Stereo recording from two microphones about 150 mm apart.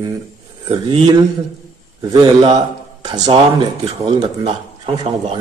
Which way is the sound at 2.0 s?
30° right (ahead or behind).